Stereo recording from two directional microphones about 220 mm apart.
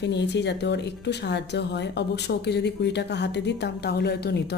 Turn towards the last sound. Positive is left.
turn(degrees=50)  # may be behind; listen again after turning